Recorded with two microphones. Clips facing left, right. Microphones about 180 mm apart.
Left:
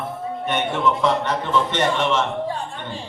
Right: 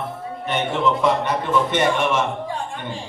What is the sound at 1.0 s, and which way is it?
A man's voice, 10° right (ahead or behind).